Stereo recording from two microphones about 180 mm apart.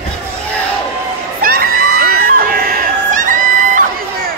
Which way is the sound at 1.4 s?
55° right (ahead or behind).